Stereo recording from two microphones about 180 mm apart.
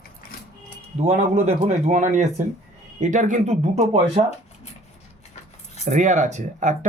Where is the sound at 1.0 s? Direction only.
35° right (ahead or behind).